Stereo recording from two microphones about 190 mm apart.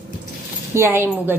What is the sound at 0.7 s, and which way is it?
Speech, 10° right (ahead or behind).